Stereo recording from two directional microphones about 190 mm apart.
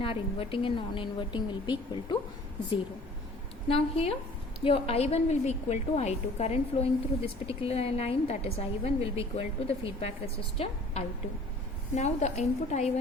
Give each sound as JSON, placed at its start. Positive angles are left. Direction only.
{"t": 0.0, "sound": "a woman's voice", "side_deg": 30}
{"t": 3.7, "sound": "a woman's voice", "side_deg": 30}